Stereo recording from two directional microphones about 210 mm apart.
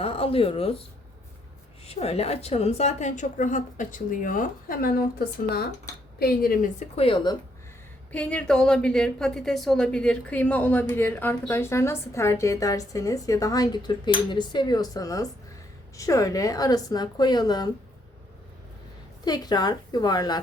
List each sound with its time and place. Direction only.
0.0 s speech: 25° left (ahead or behind)
1.9 s a woman's voice: 30° left (ahead or behind)
8.1 s a woman's voice: 5° left (ahead or behind)
19.2 s a woman's voice: 20° left (ahead or behind)